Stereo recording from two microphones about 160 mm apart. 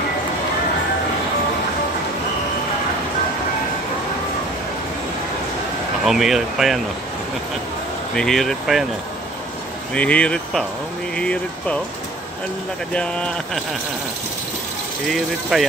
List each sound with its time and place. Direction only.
6.0 s speech: centre (ahead or behind)
8.2 s speech: centre (ahead or behind)
9.9 s speech: 5° left (ahead or behind)
12.9 s speech: 5° left (ahead or behind)
15.0 s speech: centre (ahead or behind)